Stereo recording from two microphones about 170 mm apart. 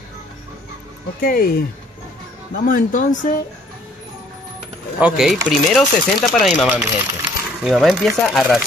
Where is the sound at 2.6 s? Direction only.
50° left (ahead or behind).